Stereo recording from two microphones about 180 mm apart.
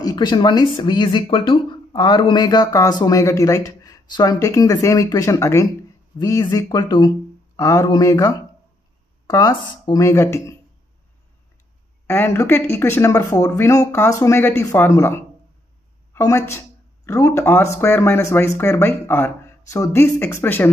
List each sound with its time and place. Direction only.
0.0 s speech: 20° left (ahead or behind)
12.1 s speech: 10° left (ahead or behind)